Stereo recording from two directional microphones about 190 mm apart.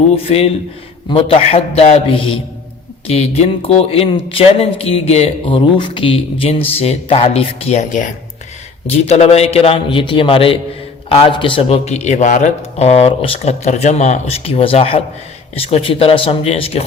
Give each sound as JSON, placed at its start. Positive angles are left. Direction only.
{"t": 0.3, "sound": "speech", "side_deg": 30}